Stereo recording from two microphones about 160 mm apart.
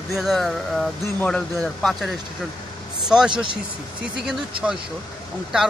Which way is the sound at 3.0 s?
5° right (ahead or behind).